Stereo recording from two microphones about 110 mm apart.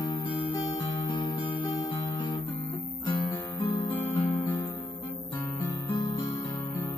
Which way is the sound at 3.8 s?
25° left (ahead or behind).